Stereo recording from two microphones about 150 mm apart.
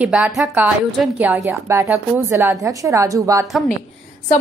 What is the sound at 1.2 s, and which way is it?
A woman's voice, 10° right (ahead or behind).